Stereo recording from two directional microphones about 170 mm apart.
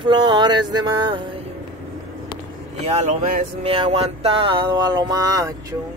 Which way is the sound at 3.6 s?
35° right (ahead or behind).